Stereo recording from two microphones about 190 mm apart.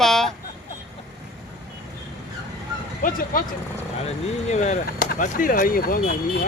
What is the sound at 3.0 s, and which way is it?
Speech, 45° left (ahead or behind).